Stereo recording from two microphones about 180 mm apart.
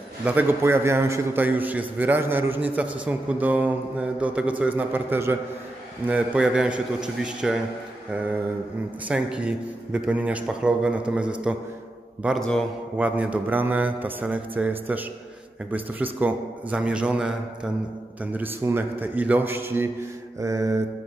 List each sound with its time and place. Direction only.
0.2 s a man's voice: 10° right (ahead or behind)
9.0 s a man's voice: 5° right (ahead or behind)
12.9 s a man's voice: 10° right (ahead or behind)
20.3 s mantra: 20° right (ahead or behind)